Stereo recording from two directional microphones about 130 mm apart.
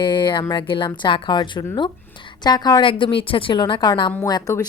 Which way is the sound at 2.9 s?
40° left (ahead or behind).